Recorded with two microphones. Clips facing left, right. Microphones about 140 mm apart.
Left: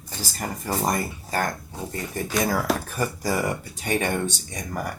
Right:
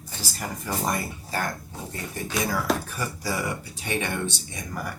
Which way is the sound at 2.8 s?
45° left (ahead or behind).